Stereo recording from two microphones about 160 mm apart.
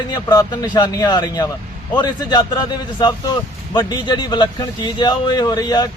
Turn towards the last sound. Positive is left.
turn(degrees=25)  # may be behind; listen again after turning